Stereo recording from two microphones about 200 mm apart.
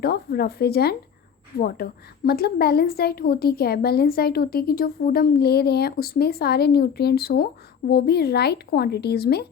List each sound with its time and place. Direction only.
0.0 s a woman's voice: 50° left (ahead or behind)